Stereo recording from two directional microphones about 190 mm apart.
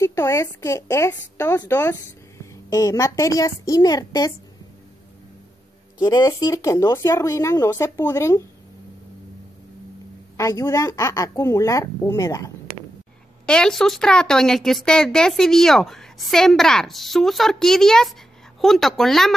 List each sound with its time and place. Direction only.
0.0 s a woman's voice: 15° left (ahead or behind)
5.9 s a woman's voice: 20° left (ahead or behind)
10.3 s a woman's voice: 15° left (ahead or behind)
13.5 s speech: 5° left (ahead or behind)